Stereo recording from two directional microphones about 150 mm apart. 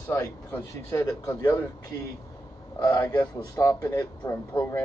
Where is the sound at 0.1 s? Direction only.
20° left (ahead or behind).